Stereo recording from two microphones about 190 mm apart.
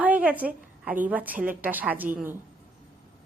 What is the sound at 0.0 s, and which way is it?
A woman's voice, 10° right (ahead or behind).